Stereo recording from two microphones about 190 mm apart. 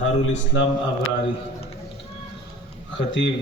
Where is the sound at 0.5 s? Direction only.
90° left.